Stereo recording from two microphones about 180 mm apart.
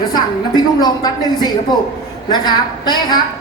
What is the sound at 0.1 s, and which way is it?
Speech, 25° left (ahead or behind).